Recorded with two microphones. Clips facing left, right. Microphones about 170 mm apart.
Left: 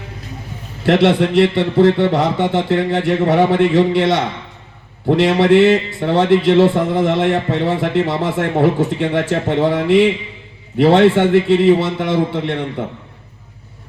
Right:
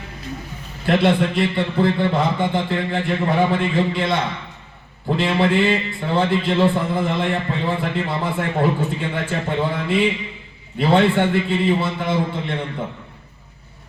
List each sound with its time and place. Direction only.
0.9 s speech: 80° left